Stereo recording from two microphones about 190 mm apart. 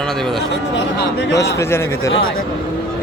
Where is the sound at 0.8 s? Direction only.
60° left (ahead or behind).